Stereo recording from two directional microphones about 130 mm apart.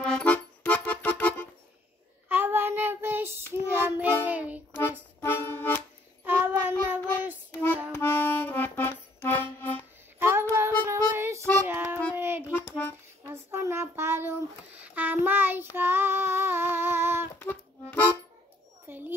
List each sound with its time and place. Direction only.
0.0 s music: 10° left (ahead or behind)
2.2 s child singing: 15° right (ahead or behind)
5.2 s music: 15° left (ahead or behind)
6.2 s child singing: 15° right (ahead or behind)
7.9 s accordion: 15° left (ahead or behind)
10.1 s child singing: 20° right (ahead or behind)
12.4 s music: 10° left (ahead or behind)
13.3 s child singing: 20° right (ahead or behind)
17.4 s accordion: 15° left (ahead or behind)
18.9 s a sound: 15° right (ahead or behind)